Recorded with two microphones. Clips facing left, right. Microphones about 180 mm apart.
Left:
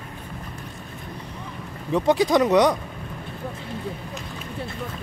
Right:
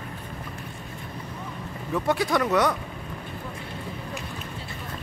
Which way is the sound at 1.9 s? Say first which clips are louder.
Left 5 dB; 20° left (ahead or behind).